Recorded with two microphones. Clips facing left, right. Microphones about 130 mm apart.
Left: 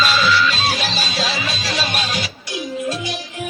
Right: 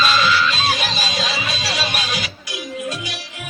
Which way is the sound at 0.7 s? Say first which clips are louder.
Left 1 dB; 30° left (ahead or behind).